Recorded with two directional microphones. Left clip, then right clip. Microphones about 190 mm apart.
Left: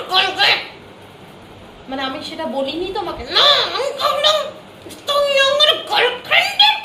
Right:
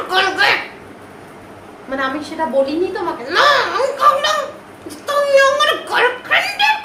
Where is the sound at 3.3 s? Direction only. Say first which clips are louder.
Even; 15° right (ahead or behind).